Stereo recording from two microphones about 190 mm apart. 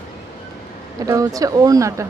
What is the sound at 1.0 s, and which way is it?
Speech, 20° right (ahead or behind).